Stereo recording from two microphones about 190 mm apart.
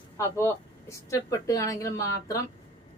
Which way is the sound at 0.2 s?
15° left (ahead or behind).